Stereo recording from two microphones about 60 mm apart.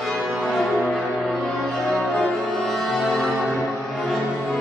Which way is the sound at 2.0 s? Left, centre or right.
Left.